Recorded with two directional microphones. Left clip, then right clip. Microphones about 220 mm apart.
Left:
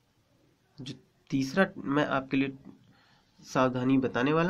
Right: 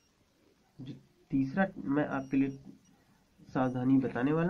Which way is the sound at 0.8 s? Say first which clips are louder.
Left 6 dB; 25° left (ahead or behind).